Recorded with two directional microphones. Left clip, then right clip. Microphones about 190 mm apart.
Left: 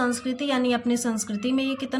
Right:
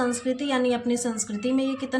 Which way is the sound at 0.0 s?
25° left (ahead or behind).